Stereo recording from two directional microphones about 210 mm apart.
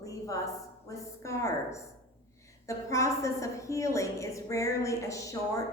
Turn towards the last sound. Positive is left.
turn(degrees=15)  # may be behind; listen again after turning